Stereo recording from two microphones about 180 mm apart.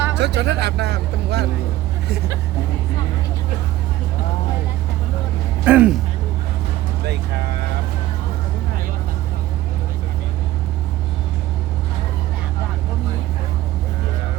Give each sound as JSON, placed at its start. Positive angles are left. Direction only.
{"t": 0.2, "sound": "speech", "side_deg": -70}
{"t": 5.6, "sound": "speech", "side_deg": -10}